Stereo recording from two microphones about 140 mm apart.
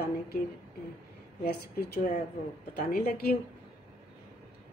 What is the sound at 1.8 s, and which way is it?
A woman's voice, 90° left.